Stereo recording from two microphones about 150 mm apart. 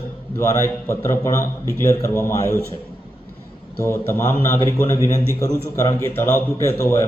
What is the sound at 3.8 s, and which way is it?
A man's voice, 15° left (ahead or behind).